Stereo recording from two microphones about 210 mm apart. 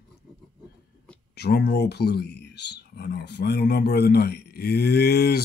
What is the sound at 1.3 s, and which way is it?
Speech, 50° left (ahead or behind).